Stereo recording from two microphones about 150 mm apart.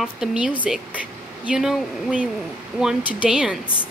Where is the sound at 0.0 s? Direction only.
5° right (ahead or behind).